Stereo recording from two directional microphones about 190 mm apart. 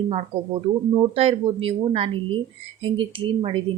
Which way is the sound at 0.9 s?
30° right (ahead or behind).